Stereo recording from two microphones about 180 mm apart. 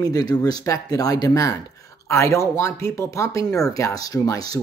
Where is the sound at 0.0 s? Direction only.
20° left (ahead or behind).